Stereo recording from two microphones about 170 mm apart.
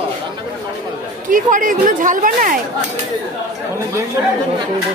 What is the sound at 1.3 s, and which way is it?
Speech, 50° right (ahead or behind).